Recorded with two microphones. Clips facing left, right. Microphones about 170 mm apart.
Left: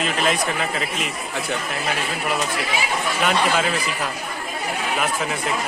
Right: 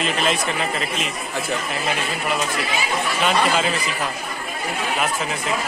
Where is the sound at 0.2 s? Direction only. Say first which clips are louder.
Even; 5° left (ahead or behind).